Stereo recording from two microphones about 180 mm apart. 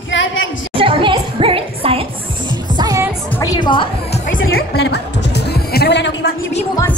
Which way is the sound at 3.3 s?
20° left (ahead or behind).